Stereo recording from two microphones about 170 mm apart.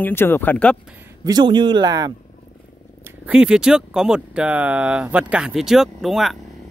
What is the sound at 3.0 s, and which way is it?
Speech, 5° right (ahead or behind).